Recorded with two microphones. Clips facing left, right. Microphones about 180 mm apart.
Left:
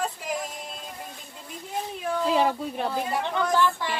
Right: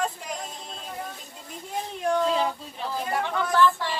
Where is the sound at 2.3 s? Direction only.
60° left (ahead or behind).